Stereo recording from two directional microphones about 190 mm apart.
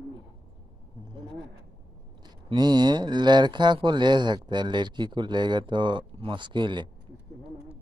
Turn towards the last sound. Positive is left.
turn(degrees=-25)  # may be behind; listen again after turning